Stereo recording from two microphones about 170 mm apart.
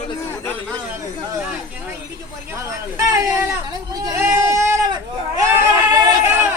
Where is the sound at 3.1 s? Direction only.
20° right (ahead or behind).